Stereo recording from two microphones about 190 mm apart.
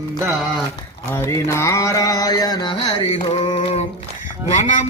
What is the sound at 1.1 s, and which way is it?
Mantra, 15° left (ahead or behind).